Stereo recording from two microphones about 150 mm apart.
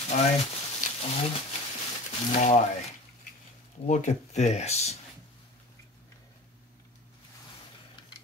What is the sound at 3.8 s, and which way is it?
Speech, 50° left (ahead or behind).